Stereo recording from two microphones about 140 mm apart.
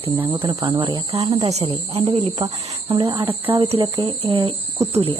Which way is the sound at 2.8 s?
35° right (ahead or behind).